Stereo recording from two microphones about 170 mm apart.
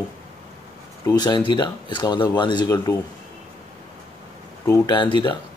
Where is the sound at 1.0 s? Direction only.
25° left (ahead or behind).